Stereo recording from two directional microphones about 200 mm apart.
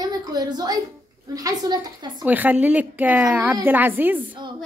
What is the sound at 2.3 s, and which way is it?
A woman's voice, 10° right (ahead or behind).